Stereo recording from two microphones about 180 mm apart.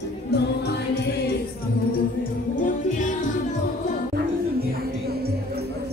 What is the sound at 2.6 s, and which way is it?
Music, 45° left (ahead or behind).